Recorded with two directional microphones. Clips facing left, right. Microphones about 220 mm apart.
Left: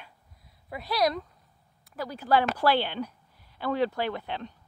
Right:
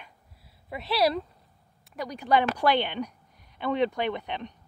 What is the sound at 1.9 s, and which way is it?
Speech, 10° right (ahead or behind).